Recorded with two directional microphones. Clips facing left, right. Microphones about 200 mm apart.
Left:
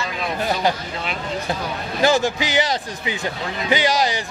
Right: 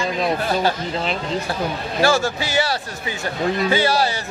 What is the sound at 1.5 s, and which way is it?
Speech, 20° left (ahead or behind).